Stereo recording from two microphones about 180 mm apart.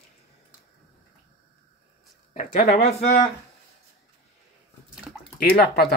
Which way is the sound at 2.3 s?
45° left (ahead or behind).